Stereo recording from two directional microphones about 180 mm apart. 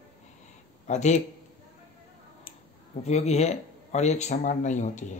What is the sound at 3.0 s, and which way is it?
Speech, 35° left (ahead or behind).